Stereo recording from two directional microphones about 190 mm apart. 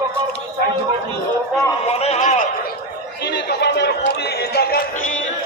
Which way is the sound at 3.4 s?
65° left (ahead or behind).